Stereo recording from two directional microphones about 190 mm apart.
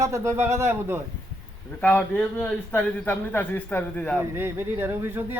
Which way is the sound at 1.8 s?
10° left (ahead or behind).